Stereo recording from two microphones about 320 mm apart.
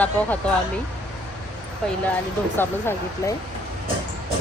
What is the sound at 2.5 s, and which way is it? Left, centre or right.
Speech, centre.